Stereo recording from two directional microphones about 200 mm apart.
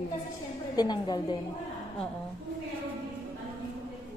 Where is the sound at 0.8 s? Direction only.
20° left (ahead or behind).